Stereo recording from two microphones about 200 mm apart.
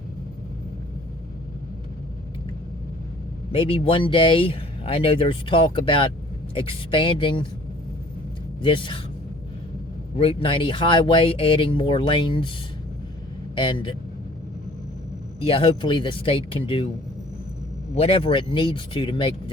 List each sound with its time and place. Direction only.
3.5 s speech: 25° left (ahead or behind)
8.6 s speech: 25° left (ahead or behind)
10.2 s speech: 25° left (ahead or behind)
13.6 s speech: 25° left (ahead or behind)
15.4 s speech: 25° left (ahead or behind)
17.9 s speech: 30° left (ahead or behind)